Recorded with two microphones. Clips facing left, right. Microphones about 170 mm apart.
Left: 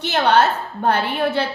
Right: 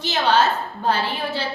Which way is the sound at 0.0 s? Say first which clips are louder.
Left 3 dB; 65° left (ahead or behind).